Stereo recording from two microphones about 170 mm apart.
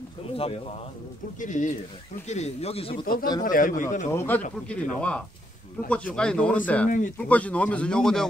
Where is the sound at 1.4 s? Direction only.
45° left (ahead or behind).